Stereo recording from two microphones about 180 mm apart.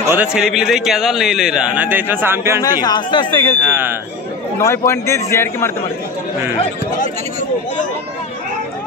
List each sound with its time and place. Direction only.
0.0 s a man's voice: 10° right (ahead or behind)
2.6 s speech: 20° left (ahead or behind)
4.6 s a man's voice: 15° left (ahead or behind)